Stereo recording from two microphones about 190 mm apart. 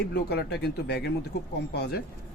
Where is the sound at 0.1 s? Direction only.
60° left (ahead or behind).